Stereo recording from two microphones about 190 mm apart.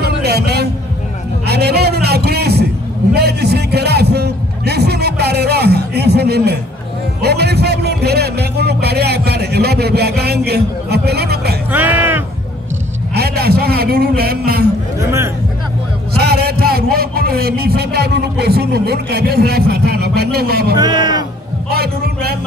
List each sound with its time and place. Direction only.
0.0 s a sound: 60° right (ahead or behind)
11.7 s music: 10° right (ahead or behind)
13.1 s a man's voice: 55° right (ahead or behind)
15.0 s music: 15° right (ahead or behind)
16.2 s a man's voice: 55° right (ahead or behind)
20.7 s speech: 20° right (ahead or behind)
21.6 s a man's voice: 55° right (ahead or behind)